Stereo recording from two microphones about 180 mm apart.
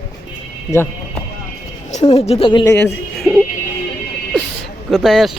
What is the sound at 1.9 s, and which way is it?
Speech, 40° left (ahead or behind).